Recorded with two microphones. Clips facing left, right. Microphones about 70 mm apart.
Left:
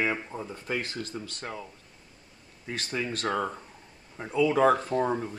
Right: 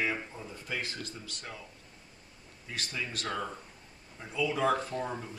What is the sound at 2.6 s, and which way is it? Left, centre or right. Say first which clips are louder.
Speech: left 6 dB; left.